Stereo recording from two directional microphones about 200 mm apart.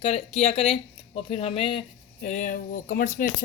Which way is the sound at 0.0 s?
30° left (ahead or behind).